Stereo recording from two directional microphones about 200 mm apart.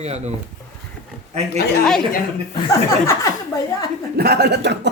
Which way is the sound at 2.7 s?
15° left (ahead or behind).